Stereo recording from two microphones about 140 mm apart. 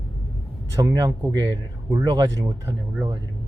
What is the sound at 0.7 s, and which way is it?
Speech, 25° right (ahead or behind).